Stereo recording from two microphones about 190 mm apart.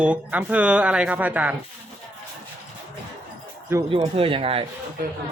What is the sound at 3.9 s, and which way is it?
Speech, 30° right (ahead or behind).